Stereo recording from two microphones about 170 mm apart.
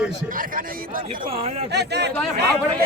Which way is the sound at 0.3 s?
55° right (ahead or behind).